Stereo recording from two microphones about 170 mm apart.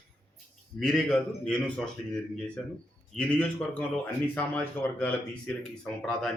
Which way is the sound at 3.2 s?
5° left (ahead or behind).